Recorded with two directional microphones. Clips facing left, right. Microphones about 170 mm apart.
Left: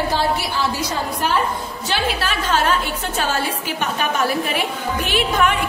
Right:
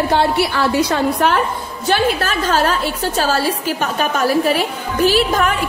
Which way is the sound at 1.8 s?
50° right (ahead or behind).